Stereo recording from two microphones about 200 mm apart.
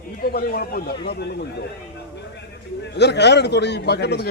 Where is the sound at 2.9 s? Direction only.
55° left (ahead or behind).